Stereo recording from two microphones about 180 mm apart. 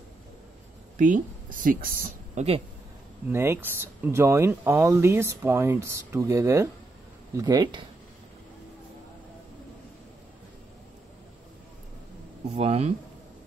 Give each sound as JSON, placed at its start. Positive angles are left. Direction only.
{"t": 0.9, "sound": "speech", "side_deg": -45}
{"t": 3.3, "sound": "speech", "side_deg": -15}
{"t": 12.5, "sound": "speech", "side_deg": -35}